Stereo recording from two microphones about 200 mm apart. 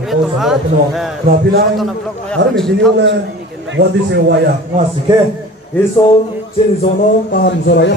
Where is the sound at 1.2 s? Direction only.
50° right (ahead or behind).